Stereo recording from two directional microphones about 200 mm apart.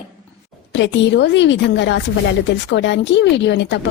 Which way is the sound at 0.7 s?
65° left (ahead or behind).